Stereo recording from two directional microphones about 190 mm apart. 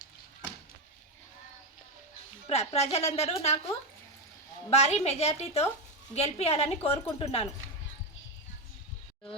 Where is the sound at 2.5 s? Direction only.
35° left (ahead or behind).